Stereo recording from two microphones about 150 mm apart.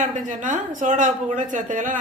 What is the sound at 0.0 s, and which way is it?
A woman's voice, 55° right (ahead or behind).